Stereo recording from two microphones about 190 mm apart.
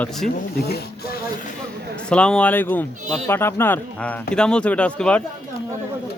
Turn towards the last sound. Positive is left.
turn(degrees=5)  # may be behind; listen again after turning